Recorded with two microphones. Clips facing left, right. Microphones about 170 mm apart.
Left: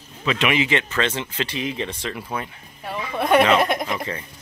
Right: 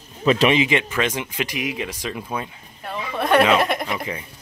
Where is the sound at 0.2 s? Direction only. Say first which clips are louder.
Right 6 dB; 35° right (ahead or behind).